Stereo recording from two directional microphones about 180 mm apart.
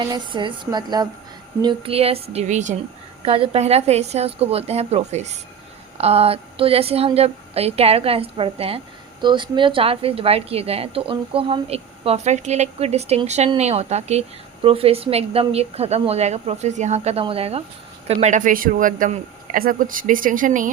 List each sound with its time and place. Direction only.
0.0 s a woman's voice: 25° right (ahead or behind); by 2.7 s 40° right (ahead or behind)
3.2 s a woman's voice: 30° right (ahead or behind); by 20.7 s 45° right (ahead or behind)